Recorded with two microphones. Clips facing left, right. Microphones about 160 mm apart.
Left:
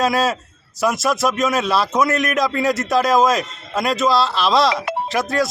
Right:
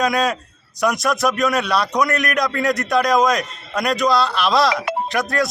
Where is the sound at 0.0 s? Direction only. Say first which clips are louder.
Left 1 dB; 5° left (ahead or behind).